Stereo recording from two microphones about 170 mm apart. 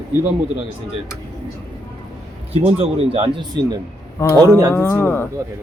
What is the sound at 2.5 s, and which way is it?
Speech, 35° right (ahead or behind).